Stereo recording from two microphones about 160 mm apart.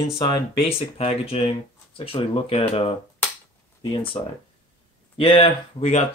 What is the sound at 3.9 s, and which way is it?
Speech, 35° left (ahead or behind).